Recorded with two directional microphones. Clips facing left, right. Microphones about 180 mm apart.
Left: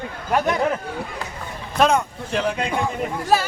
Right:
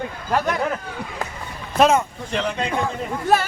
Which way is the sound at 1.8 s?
Centre (ahead or behind).